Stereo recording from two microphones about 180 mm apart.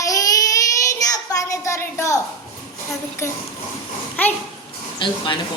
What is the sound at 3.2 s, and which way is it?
Speech, 15° left (ahead or behind).